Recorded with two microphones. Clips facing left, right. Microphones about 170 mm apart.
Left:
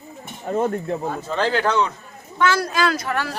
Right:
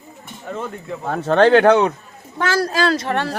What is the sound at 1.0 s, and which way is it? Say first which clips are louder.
Speech: right 14 dB; 75° right (ahead or behind).